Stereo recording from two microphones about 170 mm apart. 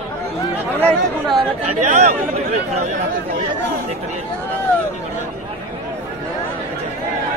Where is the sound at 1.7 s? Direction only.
45° right (ahead or behind).